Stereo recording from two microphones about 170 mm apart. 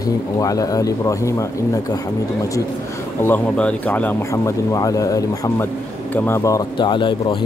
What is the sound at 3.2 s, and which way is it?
Speech, 10° left (ahead or behind).